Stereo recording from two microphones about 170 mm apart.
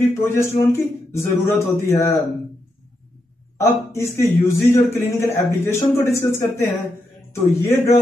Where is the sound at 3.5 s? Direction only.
15° left (ahead or behind).